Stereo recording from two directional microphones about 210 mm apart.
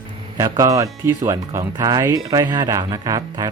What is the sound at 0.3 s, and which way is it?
Speech, 15° right (ahead or behind).